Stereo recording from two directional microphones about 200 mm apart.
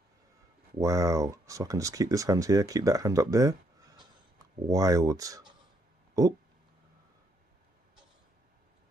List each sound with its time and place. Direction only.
0.7 s speech: 15° right (ahead or behind)